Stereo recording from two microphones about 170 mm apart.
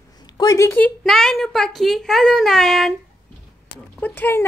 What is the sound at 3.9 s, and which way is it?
Speech, 10° left (ahead or behind).